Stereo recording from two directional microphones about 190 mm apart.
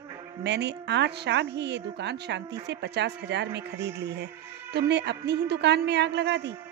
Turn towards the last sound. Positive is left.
turn(degrees=-65)  # may be behind; listen again after turning